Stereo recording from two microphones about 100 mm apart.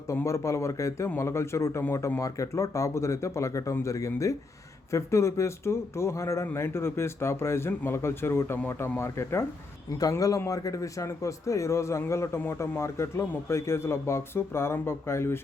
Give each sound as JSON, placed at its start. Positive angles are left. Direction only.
{"t": 0.3, "sound": "a man's voice", "side_deg": 30}